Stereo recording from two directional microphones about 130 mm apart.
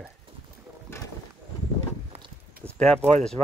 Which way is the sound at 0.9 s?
20° left (ahead or behind).